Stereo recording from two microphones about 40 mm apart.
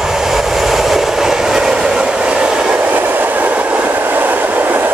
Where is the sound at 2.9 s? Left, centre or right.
Right.